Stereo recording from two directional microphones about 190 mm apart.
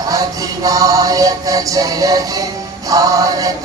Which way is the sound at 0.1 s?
20° right (ahead or behind).